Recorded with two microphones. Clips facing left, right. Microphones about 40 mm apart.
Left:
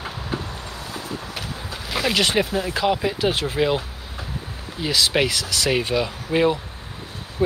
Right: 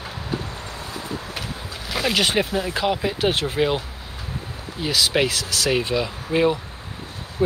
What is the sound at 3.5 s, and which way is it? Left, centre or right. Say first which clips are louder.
Speech: even; centre.